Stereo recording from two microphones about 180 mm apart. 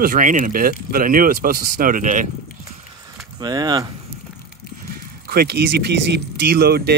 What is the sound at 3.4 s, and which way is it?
Speech, 25° right (ahead or behind).